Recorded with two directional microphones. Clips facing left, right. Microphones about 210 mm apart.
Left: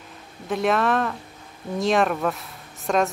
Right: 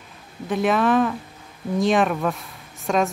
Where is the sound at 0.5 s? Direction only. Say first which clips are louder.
Right 2 dB; centre (ahead or behind).